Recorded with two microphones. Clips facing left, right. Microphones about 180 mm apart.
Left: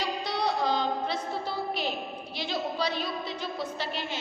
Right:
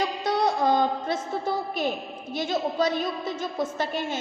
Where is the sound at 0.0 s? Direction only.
50° right (ahead or behind).